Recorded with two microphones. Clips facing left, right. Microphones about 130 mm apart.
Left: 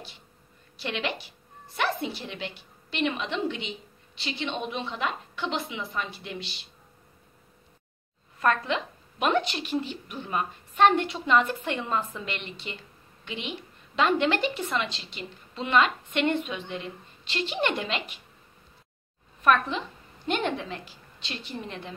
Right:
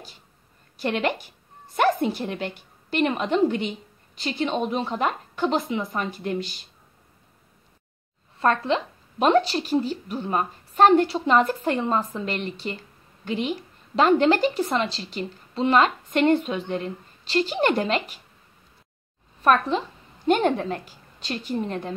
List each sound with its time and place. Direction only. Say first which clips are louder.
0.7 s a woman's voice: right 7 dB; 50° right (ahead or behind)
8.4 s a woman's voice: right 4 dB; 30° right (ahead or behind)
19.4 s a woman's voice: right 3 dB; 35° right (ahead or behind)